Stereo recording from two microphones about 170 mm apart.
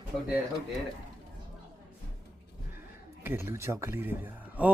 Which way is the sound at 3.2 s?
15° right (ahead or behind).